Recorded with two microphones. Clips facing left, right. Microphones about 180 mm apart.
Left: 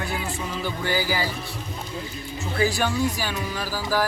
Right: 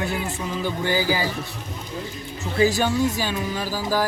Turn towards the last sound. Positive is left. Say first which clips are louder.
# right 1 dB
turn(degrees=-15)  # may be behind; listen again after turning